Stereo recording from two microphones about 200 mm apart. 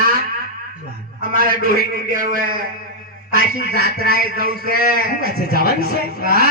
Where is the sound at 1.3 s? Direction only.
45° right (ahead or behind).